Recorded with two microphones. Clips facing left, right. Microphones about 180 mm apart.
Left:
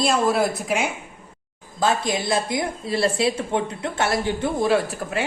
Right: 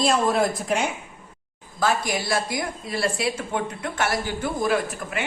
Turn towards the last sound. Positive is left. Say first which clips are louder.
# left 3 dB
turn(degrees=35)  # may be behind; listen again after turning